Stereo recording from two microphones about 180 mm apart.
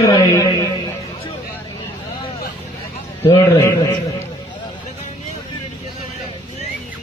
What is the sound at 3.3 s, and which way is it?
Speech, 15° left (ahead or behind).